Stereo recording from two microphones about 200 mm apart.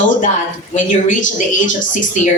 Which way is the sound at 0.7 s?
40° left (ahead or behind).